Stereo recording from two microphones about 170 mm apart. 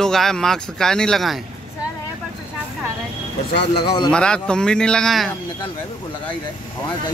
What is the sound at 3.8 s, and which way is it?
Speech, 30° left (ahead or behind).